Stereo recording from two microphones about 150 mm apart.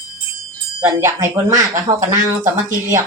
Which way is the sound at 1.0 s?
20° right (ahead or behind).